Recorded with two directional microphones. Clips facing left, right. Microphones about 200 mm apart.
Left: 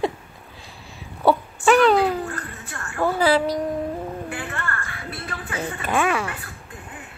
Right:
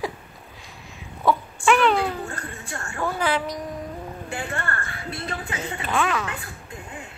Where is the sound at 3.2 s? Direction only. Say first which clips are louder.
Left 7 dB; 35° left (ahead or behind).